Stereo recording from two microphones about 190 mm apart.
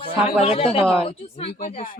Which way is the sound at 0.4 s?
30° left (ahead or behind).